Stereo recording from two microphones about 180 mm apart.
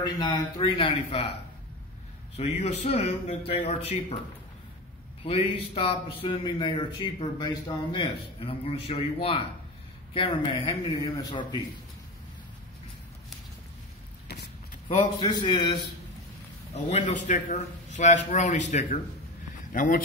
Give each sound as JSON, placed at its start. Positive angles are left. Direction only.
{"t": 0.0, "sound": "a man's voice", "side_deg": 20}
{"t": 2.3, "sound": "speech", "side_deg": 35}
{"t": 5.2, "sound": "a man's voice", "side_deg": 35}
{"t": 14.2, "sound": "a sound", "side_deg": 65}
{"t": 14.9, "sound": "a man's voice", "side_deg": 25}
{"t": 16.7, "sound": "speech", "side_deg": 40}